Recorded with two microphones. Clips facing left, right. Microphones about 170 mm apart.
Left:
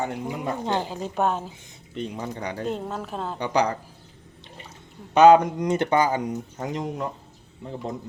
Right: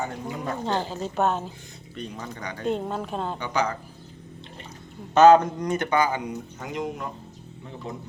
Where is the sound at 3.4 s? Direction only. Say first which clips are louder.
Left 5 dB; 35° left (ahead or behind).